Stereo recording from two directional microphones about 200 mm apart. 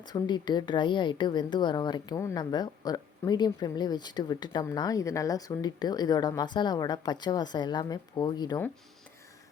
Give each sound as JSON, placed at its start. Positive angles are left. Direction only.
{"t": 0.0, "sound": "a woman's voice", "side_deg": 20}